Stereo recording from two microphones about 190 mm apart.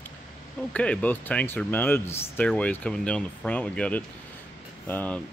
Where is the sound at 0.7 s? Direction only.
5° left (ahead or behind).